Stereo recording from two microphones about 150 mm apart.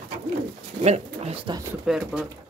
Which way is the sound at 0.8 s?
45° right (ahead or behind).